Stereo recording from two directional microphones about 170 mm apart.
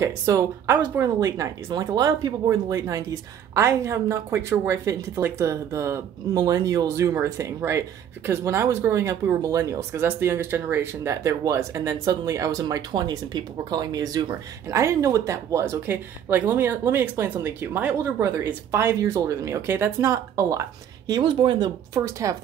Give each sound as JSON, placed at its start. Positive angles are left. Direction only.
{"t": 0.0, "sound": "speech", "side_deg": -15}
{"t": 21.1, "sound": "speech", "side_deg": -25}